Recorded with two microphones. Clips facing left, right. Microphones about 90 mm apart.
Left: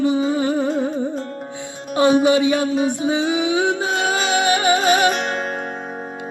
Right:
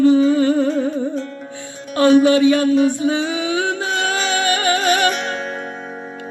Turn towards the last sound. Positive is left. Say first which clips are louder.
# left 1 dB
turn(degrees=45)  # may be behind; listen again after turning